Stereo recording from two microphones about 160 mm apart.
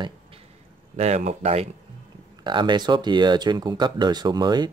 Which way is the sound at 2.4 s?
30° right (ahead or behind).